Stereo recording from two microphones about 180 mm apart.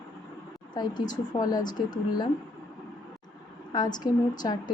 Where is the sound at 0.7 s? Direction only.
25° left (ahead or behind).